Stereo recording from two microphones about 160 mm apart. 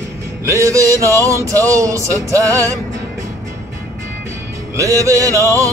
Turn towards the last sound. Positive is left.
turn(degrees=-20)  # may be behind; listen again after turning